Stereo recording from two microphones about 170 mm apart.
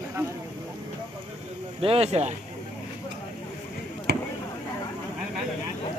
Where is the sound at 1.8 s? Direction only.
35° right (ahead or behind).